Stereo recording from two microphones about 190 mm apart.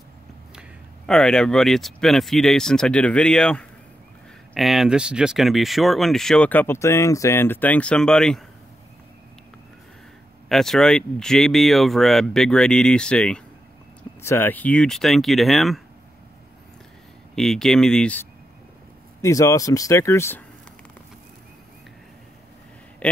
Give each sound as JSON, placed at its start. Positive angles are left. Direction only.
{"t": 0.6, "sound": "speech", "side_deg": 0}
{"t": 10.5, "sound": "speech", "side_deg": 0}
{"t": 17.4, "sound": "speech", "side_deg": 0}
{"t": 19.2, "sound": "speech", "side_deg": 15}